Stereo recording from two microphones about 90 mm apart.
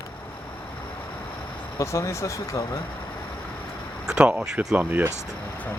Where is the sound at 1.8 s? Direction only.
35° left (ahead or behind).